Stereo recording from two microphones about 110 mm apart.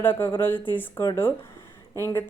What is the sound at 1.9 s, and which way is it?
Speech, 25° left (ahead or behind).